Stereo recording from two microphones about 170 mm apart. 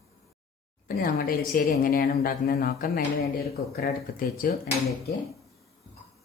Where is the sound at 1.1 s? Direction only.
55° left (ahead or behind).